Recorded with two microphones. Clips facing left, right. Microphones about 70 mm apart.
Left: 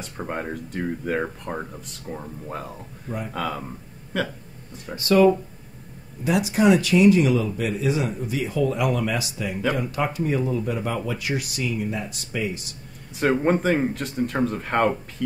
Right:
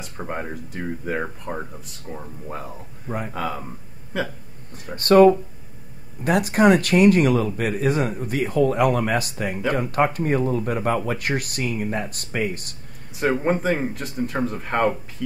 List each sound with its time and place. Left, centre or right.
0.0 s speech: centre
4.9 s speech: right
13.1 s speech: centre